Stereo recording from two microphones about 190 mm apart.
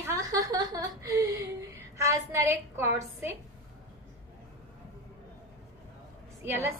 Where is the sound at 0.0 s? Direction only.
15° right (ahead or behind).